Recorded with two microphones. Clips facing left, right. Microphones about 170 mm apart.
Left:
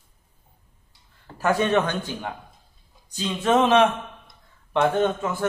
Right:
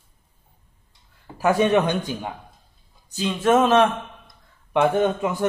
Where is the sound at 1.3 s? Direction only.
15° right (ahead or behind).